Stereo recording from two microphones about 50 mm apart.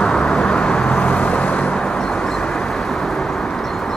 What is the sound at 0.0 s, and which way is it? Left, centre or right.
Vehicle, centre.